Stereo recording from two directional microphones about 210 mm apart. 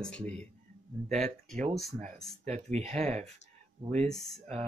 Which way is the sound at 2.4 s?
30° right (ahead or behind).